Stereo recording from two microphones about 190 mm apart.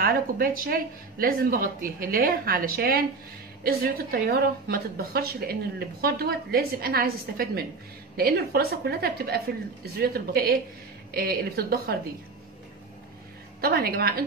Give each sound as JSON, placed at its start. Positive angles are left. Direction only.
{"t": 0.0, "sound": "a woman's voice", "side_deg": -50}
{"t": 13.6, "sound": "a woman's voice", "side_deg": -55}